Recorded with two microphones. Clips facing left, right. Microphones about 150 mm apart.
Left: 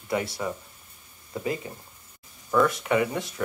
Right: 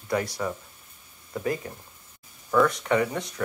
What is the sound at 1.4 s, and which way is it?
Speech, 15° left (ahead or behind).